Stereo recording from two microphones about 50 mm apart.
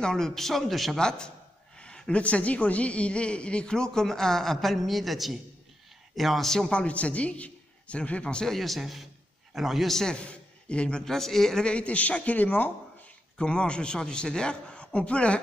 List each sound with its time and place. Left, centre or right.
0.0 s speech: centre
0.9 s a man's voice: centre
6.7 s a man's voice: left
8.5 s speech: centre
10.1 s a man's voice: left
11.1 s a man's voice: centre
11.6 s speech: left
13.4 s speech: centre